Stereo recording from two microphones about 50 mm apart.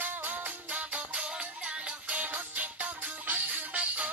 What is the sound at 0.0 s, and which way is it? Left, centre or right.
Music, right.